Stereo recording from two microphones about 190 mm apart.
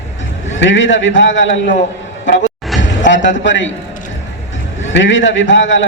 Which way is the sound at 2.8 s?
75° left (ahead or behind).